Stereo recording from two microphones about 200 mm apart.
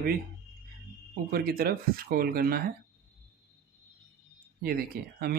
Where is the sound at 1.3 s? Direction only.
50° right (ahead or behind).